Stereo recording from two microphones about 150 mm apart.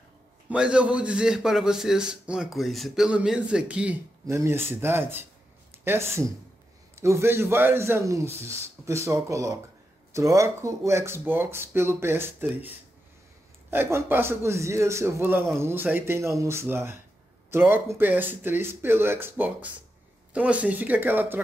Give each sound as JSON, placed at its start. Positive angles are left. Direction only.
{"t": 0.5, "sound": "a man's voice", "side_deg": -5}